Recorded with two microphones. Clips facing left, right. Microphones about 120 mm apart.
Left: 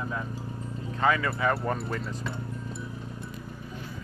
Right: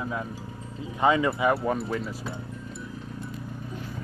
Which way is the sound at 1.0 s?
20° right (ahead or behind).